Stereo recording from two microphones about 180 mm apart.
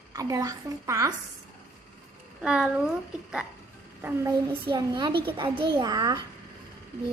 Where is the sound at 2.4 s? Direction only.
5° right (ahead or behind).